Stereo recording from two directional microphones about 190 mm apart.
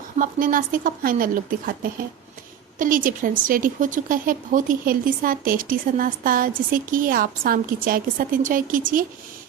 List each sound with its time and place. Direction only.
0.2 s a woman's voice: 45° right (ahead or behind)